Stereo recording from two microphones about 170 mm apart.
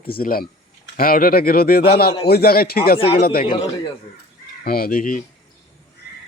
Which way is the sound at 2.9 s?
30° left (ahead or behind).